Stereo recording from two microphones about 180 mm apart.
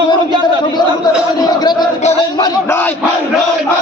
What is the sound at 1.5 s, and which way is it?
Music, 25° left (ahead or behind).